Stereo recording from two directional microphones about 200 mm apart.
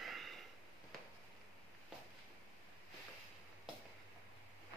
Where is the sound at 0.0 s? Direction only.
Centre (ahead or behind).